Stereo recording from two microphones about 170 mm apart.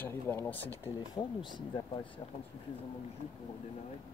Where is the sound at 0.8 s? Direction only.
25° left (ahead or behind).